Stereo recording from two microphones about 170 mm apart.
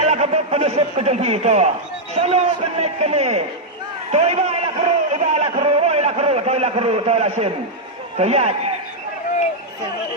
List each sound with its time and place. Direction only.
0.0 s a man's voice: 40° right (ahead or behind)